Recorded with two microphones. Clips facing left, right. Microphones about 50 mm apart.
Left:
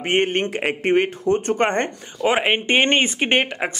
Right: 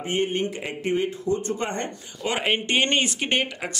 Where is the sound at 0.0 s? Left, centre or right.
Left.